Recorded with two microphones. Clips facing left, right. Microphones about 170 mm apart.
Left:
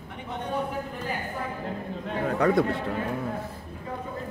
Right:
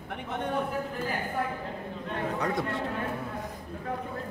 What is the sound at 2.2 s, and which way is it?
Chatter, 60° left (ahead or behind).